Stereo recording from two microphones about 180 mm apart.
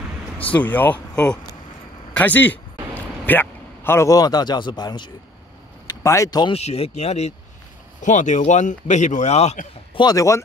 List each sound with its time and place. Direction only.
0.4 s a man's voice: 10° left (ahead or behind)
6.5 s speech: 35° left (ahead or behind)
10.0 s speech: 15° left (ahead or behind)